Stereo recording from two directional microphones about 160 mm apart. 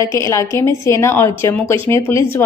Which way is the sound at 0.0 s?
20° left (ahead or behind).